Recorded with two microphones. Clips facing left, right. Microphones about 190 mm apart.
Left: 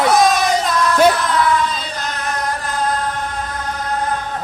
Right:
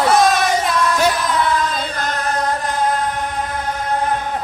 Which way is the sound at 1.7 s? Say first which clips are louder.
Right 3 dB; 55° right (ahead or behind).